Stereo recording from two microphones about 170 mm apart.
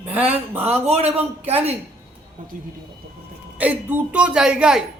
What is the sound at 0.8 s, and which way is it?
Speech, 40° right (ahead or behind).